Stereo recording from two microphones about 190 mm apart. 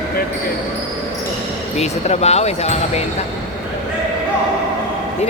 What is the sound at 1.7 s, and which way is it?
Speech, 35° left (ahead or behind).